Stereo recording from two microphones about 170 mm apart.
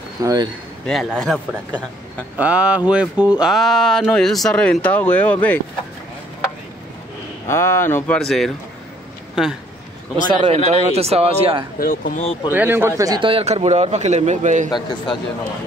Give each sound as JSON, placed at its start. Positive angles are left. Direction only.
{"t": 0.2, "sound": "speech", "side_deg": -20}
{"t": 0.8, "sound": "speech", "side_deg": 0}
{"t": 2.3, "sound": "speech", "side_deg": -10}
{"t": 7.4, "sound": "speech", "side_deg": 15}
{"t": 8.2, "sound": "speech", "side_deg": 0}
{"t": 10.4, "sound": "a man's voice", "side_deg": -35}
{"t": 11.8, "sound": "speech", "side_deg": 55}
{"t": 12.4, "sound": "a man's voice", "side_deg": -10}